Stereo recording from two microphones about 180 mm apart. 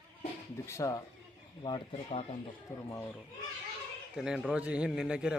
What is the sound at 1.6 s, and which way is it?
Speech, 30° left (ahead or behind).